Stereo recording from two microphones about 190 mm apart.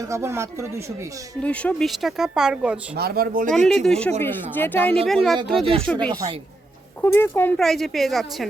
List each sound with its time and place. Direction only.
0.1 s speech: 15° right (ahead or behind)
1.4 s speech: 5° left (ahead or behind)
2.9 s speech: 55° right (ahead or behind)
3.7 s speech: 5° left (ahead or behind)